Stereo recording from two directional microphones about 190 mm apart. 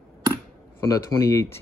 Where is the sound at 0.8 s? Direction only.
20° left (ahead or behind).